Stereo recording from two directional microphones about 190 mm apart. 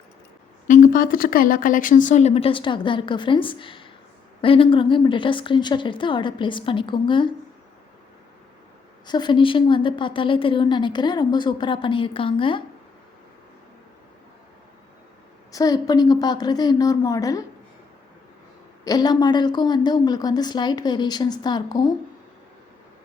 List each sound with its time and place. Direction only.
0.7 s a woman's voice: 45° left (ahead or behind); by 7.3 s 25° left (ahead or behind)
9.0 s a woman's voice: 25° left (ahead or behind)
15.5 s a woman's voice: 20° left (ahead or behind)
18.9 s a woman's voice: 20° left (ahead or behind)